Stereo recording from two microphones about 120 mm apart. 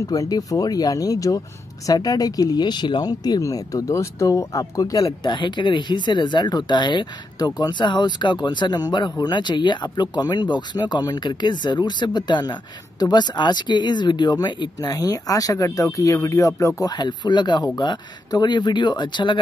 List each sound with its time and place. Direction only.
0.0 s speech: 30° left (ahead or behind)
5.0 s speech: 40° left (ahead or behind)